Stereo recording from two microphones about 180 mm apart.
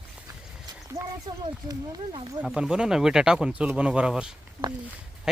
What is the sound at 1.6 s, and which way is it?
Speech, 20° right (ahead or behind).